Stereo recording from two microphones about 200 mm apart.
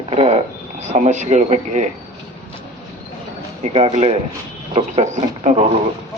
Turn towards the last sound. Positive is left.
turn(degrees=-30)  # may be behind; listen again after turning